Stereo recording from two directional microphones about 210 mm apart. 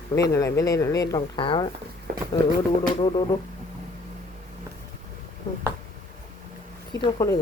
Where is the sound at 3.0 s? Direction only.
20° left (ahead or behind).